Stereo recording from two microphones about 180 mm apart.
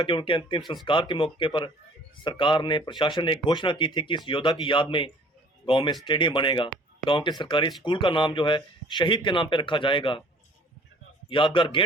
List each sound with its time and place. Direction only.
0.0 s speech: 30° left (ahead or behind)
11.3 s speech: 30° left (ahead or behind)